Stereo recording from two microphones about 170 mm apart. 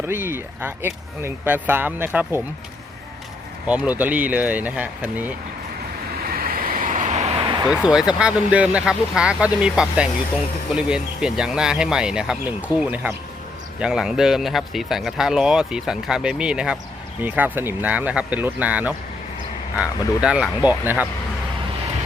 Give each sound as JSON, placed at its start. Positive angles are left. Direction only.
{"t": 0.0, "sound": "speech", "side_deg": -15}
{"t": 3.7, "sound": "speech", "side_deg": -10}
{"t": 6.2, "sound": "vehicle", "side_deg": -60}
{"t": 7.7, "sound": "speech", "side_deg": -5}